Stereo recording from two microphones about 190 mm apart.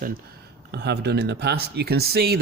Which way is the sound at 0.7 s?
60° right (ahead or behind).